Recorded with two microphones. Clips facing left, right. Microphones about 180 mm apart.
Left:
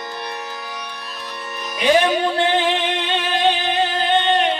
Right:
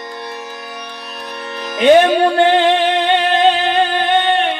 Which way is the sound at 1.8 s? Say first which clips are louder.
Right 7 dB; 60° right (ahead or behind).